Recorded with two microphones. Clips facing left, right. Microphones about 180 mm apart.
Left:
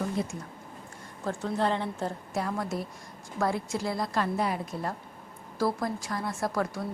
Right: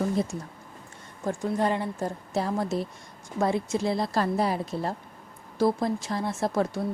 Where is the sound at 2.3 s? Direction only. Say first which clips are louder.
Right 6 dB; 25° right (ahead or behind).